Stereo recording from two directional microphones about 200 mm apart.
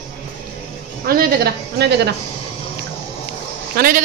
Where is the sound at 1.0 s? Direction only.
50° right (ahead or behind).